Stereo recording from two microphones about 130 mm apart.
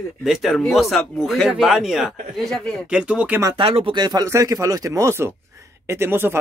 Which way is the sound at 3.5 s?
45° right (ahead or behind).